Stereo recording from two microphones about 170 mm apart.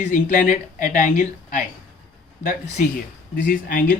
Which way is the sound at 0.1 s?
50° left (ahead or behind).